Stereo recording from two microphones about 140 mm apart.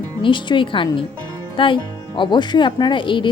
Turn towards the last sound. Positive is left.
turn(degrees=35)  # may be behind; listen again after turning